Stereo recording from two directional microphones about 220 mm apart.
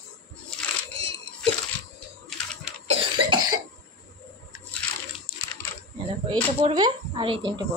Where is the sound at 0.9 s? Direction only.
25° right (ahead or behind).